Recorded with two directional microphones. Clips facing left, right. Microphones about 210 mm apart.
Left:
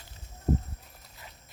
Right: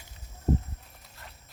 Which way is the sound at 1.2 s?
Centre (ahead or behind).